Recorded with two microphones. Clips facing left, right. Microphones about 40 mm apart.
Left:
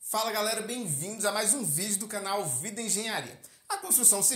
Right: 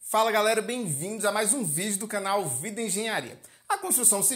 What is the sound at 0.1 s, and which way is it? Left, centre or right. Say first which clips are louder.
Speech: right 7 dB; right.